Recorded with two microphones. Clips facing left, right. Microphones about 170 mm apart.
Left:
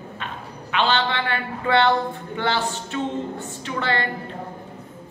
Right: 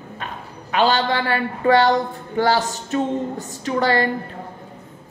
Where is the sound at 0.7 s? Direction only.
40° right (ahead or behind).